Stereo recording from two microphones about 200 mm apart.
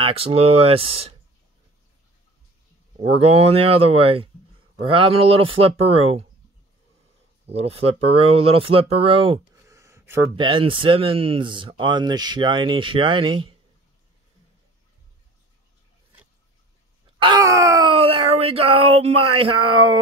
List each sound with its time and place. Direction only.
0.0 s speech: 30° right (ahead or behind)
3.0 s speech: 30° right (ahead or behind)
7.4 s speech: 30° right (ahead or behind)
9.6 s a sound: 15° right (ahead or behind)
10.3 s speech: 25° right (ahead or behind)
17.2 s groan: 20° right (ahead or behind)